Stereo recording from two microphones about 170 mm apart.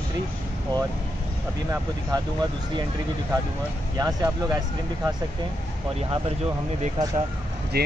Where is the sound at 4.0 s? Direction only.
20° right (ahead or behind).